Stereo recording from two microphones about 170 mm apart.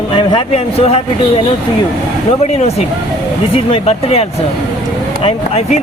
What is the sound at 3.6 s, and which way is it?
Speech, 35° left (ahead or behind).